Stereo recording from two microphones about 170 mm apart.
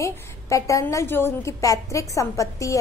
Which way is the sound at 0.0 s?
20° left (ahead or behind).